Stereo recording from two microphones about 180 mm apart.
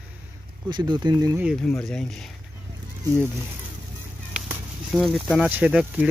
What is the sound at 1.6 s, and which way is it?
Speech, 5° left (ahead or behind).